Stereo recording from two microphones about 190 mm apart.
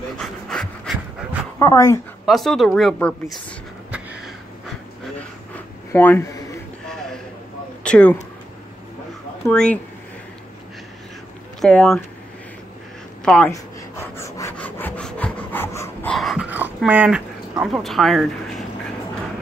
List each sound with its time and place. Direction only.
0.2 s pant: centre (ahead or behind)
1.6 s speech: 15° left (ahead or behind)
2.2 s speech: centre (ahead or behind)
5.9 s a man's voice: 10° left (ahead or behind)
7.8 s speech: 5° left (ahead or behind)
9.5 s speech: 5° left (ahead or behind)
11.6 s speech: 5° left (ahead or behind)
13.2 s speech: 5° left (ahead or behind)
14.1 s pant: 15° left (ahead or behind)
16.1 s a sound: centre (ahead or behind)